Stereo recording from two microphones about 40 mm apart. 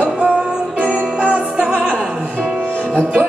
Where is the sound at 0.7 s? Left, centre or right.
Right.